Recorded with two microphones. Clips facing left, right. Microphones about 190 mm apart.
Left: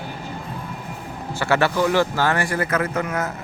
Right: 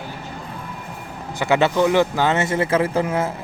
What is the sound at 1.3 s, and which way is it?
Speech, 15° right (ahead or behind).